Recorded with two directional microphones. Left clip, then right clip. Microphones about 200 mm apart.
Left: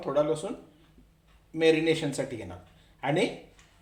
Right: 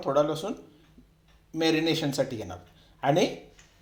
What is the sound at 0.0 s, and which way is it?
Speech, 25° right (ahead or behind).